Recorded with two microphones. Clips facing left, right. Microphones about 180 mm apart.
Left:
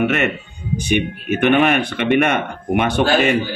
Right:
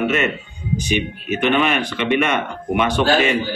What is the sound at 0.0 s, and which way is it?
A man's voice, 60° left (ahead or behind).